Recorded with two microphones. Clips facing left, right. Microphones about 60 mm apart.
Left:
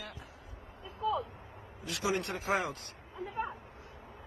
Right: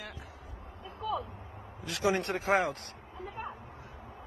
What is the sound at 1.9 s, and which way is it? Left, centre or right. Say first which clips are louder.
Speech: right 4 dB; right.